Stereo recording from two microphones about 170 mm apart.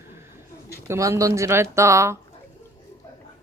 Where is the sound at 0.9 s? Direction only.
15° right (ahead or behind).